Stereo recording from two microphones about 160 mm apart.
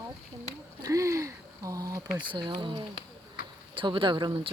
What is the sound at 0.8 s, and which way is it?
Speech, 20° right (ahead or behind).